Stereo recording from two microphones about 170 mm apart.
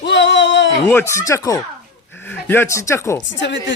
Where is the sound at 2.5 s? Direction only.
15° left (ahead or behind).